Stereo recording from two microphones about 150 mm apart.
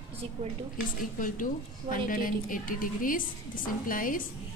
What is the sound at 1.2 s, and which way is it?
A woman's voice, 65° left (ahead or behind).